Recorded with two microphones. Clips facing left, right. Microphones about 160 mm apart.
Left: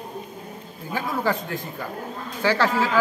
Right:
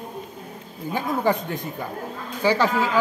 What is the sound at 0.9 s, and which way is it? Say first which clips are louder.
A man's voice: right 2 dB; 20° right (ahead or behind).